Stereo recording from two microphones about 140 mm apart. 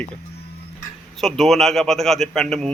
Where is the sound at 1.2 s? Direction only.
Centre (ahead or behind).